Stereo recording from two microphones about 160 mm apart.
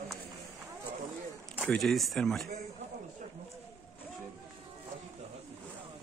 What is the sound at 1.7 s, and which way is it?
Speech, centre (ahead or behind).